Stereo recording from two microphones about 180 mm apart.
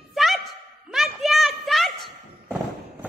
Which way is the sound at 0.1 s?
Centre (ahead or behind).